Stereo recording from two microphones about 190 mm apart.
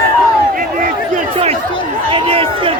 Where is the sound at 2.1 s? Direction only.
30° right (ahead or behind).